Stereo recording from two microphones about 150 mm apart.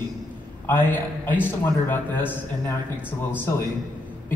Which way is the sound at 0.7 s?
15° left (ahead or behind).